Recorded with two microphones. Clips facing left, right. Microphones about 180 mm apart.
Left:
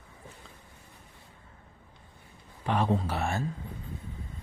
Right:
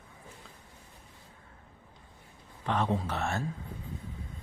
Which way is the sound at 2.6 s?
5° left (ahead or behind).